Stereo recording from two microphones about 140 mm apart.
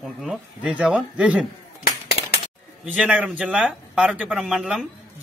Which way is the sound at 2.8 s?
10° right (ahead or behind).